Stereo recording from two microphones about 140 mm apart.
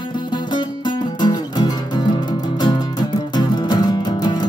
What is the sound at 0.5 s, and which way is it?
Music, 30° left (ahead or behind).